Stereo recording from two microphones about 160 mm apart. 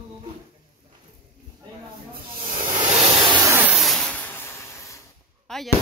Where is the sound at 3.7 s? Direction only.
Centre (ahead or behind); by 4.9 s 15° left (ahead or behind).